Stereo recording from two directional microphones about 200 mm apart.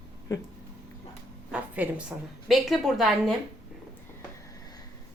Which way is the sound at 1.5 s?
5° right (ahead or behind).